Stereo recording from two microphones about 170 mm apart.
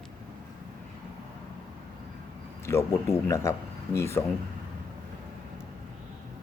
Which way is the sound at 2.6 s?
15° left (ahead or behind).